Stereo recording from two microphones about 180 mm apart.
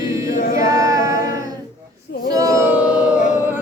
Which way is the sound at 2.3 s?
20° right (ahead or behind).